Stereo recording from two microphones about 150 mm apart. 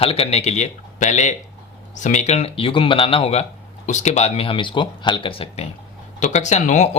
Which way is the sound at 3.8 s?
50° left (ahead or behind).